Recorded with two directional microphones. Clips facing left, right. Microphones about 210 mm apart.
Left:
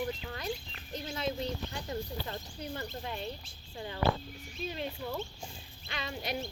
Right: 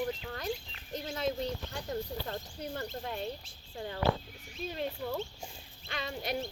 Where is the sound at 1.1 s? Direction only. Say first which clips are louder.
Right 1 dB; 45° right (ahead or behind).